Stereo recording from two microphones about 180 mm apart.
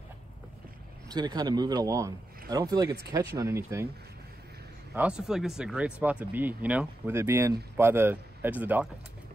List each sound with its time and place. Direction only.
1.1 s speech: 20° right (ahead or behind)
4.9 s speech: 5° right (ahead or behind)